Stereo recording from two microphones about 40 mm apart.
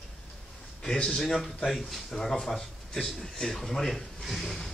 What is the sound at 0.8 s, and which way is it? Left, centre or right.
A man's voice, centre.